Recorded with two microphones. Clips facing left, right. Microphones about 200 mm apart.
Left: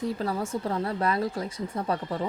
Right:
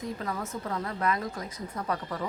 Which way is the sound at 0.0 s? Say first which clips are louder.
Left 5 dB; 30° left (ahead or behind).